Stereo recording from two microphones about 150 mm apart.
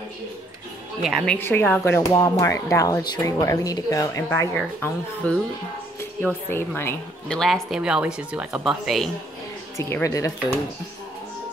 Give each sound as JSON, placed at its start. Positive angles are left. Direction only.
{"t": 1.0, "sound": "speech", "side_deg": 5}
{"t": 7.3, "sound": "speech", "side_deg": 0}
{"t": 9.8, "sound": "speech", "side_deg": 20}